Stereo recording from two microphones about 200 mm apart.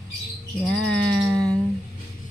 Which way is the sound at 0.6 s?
Centre (ahead or behind).